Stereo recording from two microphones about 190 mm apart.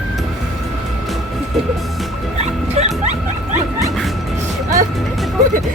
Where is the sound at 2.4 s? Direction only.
35° right (ahead or behind).